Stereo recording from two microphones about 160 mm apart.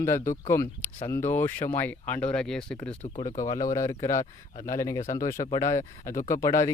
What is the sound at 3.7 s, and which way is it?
Speech, 20° left (ahead or behind).